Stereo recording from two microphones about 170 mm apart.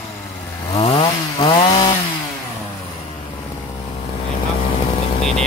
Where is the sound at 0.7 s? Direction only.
35° left (ahead or behind).